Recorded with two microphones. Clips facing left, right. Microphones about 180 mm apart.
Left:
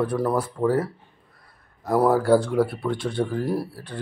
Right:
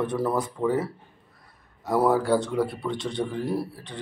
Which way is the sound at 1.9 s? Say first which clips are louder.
Left 2 dB; centre (ahead or behind).